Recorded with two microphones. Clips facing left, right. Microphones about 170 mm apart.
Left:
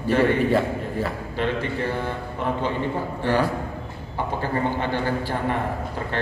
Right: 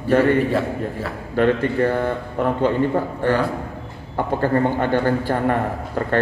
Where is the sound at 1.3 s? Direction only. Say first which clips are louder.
Right 9 dB; 50° right (ahead or behind).